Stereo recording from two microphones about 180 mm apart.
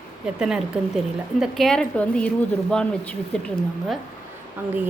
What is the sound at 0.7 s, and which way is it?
A woman's voice, 5° right (ahead or behind).